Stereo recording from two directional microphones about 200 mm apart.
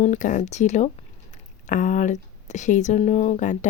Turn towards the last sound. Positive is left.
turn(degrees=35)  # may be behind; listen again after turning